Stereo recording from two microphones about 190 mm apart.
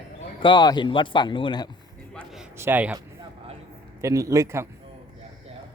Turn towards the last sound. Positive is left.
turn(degrees=-15)  # may be behind; listen again after turning